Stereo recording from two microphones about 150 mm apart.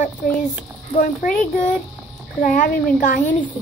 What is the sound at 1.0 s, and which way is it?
A child's voice, 65° left (ahead or behind).